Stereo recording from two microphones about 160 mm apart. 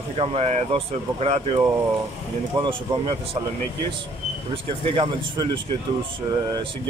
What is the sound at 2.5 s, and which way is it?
Speech, 30° right (ahead or behind).